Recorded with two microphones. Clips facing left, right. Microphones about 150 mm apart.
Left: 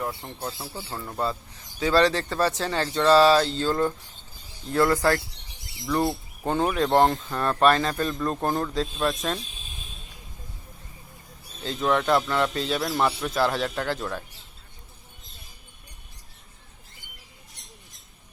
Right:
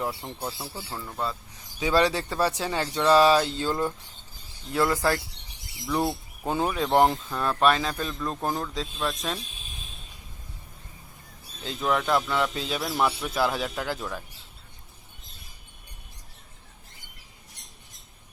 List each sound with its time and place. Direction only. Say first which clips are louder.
0.0 s speech: even; 15° right (ahead or behind)
0.9 s speech: left 2 dB; 20° left (ahead or behind)
1.8 s a man's voice: left 2 dB; 15° right (ahead or behind)
11.6 s a man's voice: left 3 dB; centre (ahead or behind)